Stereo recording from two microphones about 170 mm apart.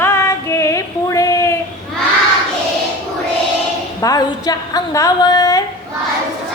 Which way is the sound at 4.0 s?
20° left (ahead or behind).